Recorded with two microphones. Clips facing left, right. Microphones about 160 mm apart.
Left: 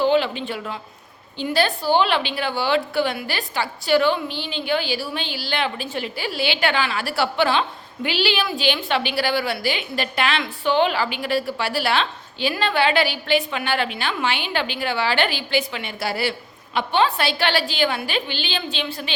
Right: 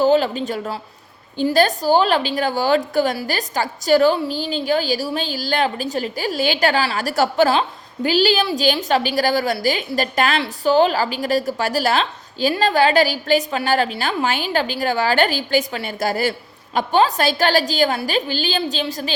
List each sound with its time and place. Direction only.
0.0 s a woman's voice: 40° right (ahead or behind)